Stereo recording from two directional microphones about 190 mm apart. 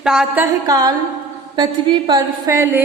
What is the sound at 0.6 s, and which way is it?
A woman's voice, 20° right (ahead or behind).